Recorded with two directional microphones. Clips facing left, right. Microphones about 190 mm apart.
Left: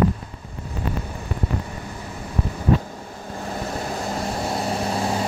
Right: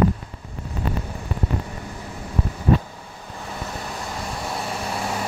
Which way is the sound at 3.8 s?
40° left (ahead or behind).